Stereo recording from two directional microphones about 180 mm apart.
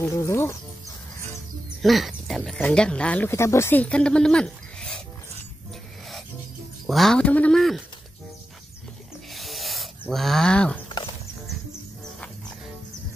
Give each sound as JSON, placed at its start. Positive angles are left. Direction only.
{"t": 0.0, "sound": "speech", "side_deg": 15}
{"t": 1.8, "sound": "speech", "side_deg": 0}
{"t": 6.9, "sound": "speech", "side_deg": 0}
{"t": 9.3, "sound": "a sound", "side_deg": 0}